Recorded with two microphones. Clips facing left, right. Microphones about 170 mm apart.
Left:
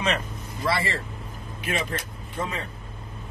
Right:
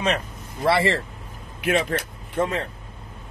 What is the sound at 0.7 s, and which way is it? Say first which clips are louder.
Speech: right 6 dB; 70° right (ahead or behind).